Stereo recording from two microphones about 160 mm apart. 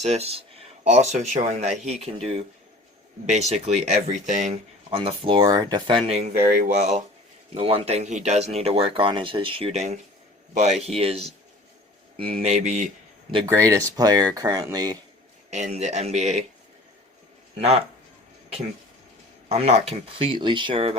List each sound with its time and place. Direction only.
0.0 s speech: 40° right (ahead or behind); by 6.0 s 25° right (ahead or behind)
6.1 s speech: 45° right (ahead or behind)
13.4 s speech: 20° right (ahead or behind)
15.4 s speech: 45° right (ahead or behind)
17.6 s speech: 40° right (ahead or behind)
19.5 s speech: 40° right (ahead or behind)